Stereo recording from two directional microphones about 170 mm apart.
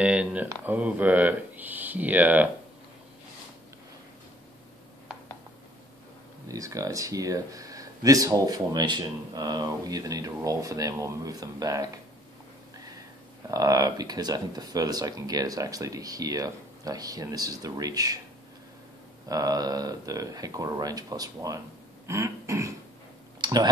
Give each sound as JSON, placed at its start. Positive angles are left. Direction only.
{"t": 0.0, "sound": "speech", "side_deg": -5}
{"t": 6.5, "sound": "speech", "side_deg": -20}
{"t": 13.5, "sound": "speech", "side_deg": -20}
{"t": 19.2, "sound": "speech", "side_deg": -20}
{"t": 22.0, "sound": "burping", "side_deg": -15}
{"t": 23.4, "sound": "speech", "side_deg": -25}